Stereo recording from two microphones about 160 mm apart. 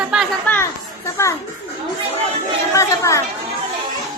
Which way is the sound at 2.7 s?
20° left (ahead or behind).